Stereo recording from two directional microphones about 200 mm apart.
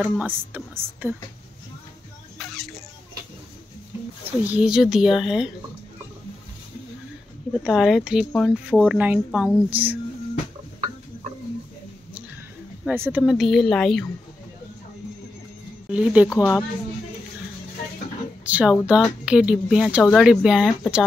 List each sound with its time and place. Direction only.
0.0 s a woman's voice: 10° right (ahead or behind)
2.5 s a sound: centre (ahead or behind)
4.5 s speech: 5° right (ahead or behind)
7.6 s a woman's voice: centre (ahead or behind)
12.8 s speech: 10° right (ahead or behind)
15.9 s a woman's voice: 5° right (ahead or behind)
16.3 s a woman's voice: 15° left (ahead or behind)
18.4 s speech: 5° right (ahead or behind)